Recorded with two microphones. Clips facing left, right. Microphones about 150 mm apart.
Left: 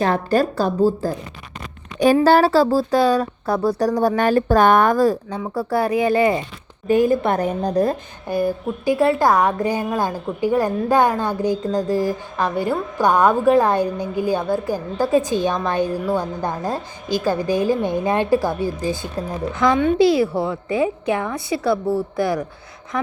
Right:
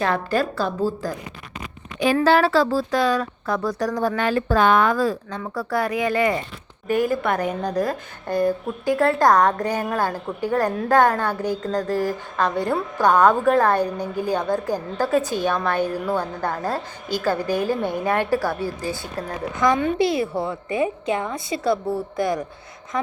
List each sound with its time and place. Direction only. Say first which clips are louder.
0.0 s speech: left 4 dB; 40° left (ahead or behind)
2.2 s speech: left 3 dB; 35° left (ahead or behind)
5.5 s a woman's voice: left 4 dB; 30° left (ahead or behind)
8.3 s a woman's voice: even; 5° left (ahead or behind)
19.5 s a child's voice: left 3 dB; 15° right (ahead or behind)
21.8 s speech: left 4 dB; centre (ahead or behind)